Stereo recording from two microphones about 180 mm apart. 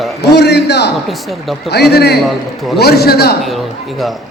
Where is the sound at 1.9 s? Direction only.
65° left (ahead or behind).